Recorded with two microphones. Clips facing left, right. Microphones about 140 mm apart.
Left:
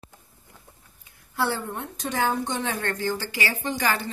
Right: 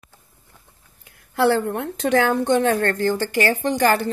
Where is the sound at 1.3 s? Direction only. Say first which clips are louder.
Right 9 dB; 75° right (ahead or behind).